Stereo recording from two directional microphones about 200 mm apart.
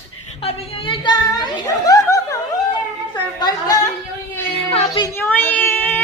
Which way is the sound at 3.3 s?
20° left (ahead or behind).